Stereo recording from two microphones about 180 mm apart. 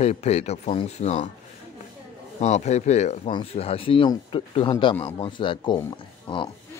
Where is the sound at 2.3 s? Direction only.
40° left (ahead or behind).